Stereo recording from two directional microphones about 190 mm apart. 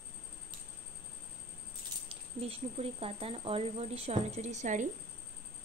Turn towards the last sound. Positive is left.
turn(degrees=-40)  # may be behind; listen again after turning